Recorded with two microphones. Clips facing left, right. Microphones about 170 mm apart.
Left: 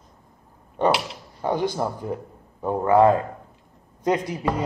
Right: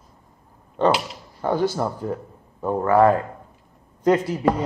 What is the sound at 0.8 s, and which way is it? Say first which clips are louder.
A man's voice: right 2 dB; 15° left (ahead or behind).